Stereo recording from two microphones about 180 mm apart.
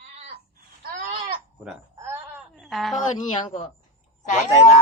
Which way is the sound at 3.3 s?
30° left (ahead or behind).